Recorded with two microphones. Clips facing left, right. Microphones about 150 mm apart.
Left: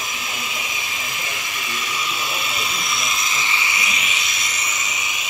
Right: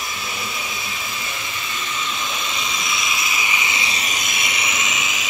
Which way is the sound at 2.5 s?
5° left (ahead or behind).